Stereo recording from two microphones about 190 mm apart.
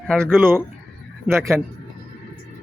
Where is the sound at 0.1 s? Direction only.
5° left (ahead or behind).